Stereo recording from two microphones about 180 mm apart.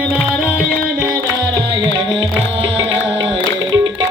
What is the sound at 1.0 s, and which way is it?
Music, 15° right (ahead or behind).